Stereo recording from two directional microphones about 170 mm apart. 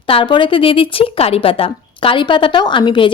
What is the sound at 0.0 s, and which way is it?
A woman's voice, 30° left (ahead or behind).